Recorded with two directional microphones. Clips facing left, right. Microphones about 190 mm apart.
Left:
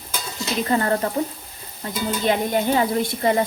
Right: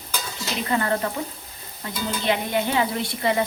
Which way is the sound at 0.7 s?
35° left (ahead or behind).